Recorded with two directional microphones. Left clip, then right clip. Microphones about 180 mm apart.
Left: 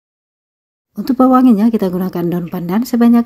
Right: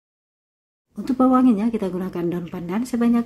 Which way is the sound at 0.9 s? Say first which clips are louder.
Left 7 dB; 40° left (ahead or behind).